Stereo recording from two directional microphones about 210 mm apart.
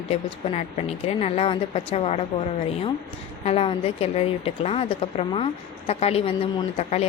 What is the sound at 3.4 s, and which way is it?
A woman's voice, 25° left (ahead or behind).